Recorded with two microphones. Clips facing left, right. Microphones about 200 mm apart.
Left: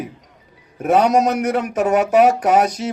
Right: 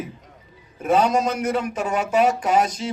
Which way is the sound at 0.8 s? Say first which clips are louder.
Left 4 dB; 65° left (ahead or behind).